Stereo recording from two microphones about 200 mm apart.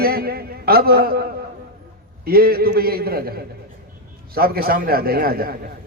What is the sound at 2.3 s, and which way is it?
A man's voice, 50° right (ahead or behind).